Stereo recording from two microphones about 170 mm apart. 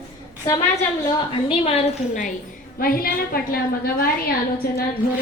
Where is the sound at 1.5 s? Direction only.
35° left (ahead or behind).